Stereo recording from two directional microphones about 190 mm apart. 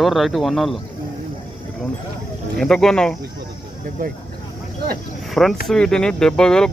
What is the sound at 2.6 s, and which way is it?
Speech, 5° left (ahead or behind).